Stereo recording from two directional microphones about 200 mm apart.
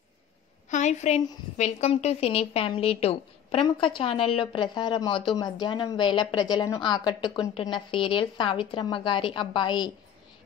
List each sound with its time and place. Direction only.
0.7 s a woman's voice: 35° left (ahead or behind)